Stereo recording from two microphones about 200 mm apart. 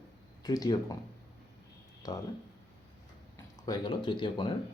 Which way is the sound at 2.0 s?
20° left (ahead or behind).